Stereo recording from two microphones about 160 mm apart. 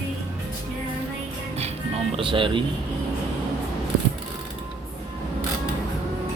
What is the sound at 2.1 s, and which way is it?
Speech, 30° right (ahead or behind).